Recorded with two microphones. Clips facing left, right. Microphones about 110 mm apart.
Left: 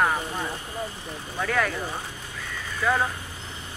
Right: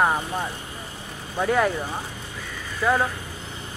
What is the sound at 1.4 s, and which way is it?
Speech, 20° right (ahead or behind).